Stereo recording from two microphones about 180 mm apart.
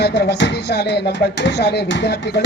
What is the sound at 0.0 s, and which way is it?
Speech, 65° left (ahead or behind).